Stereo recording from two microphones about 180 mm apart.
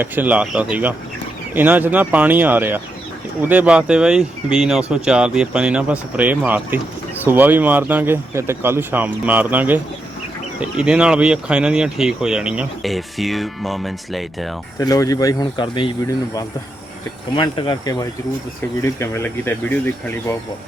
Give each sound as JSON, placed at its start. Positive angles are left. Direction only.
{"t": 0.0, "sound": "speech", "side_deg": -10}
{"t": 14.8, "sound": "speech", "side_deg": 20}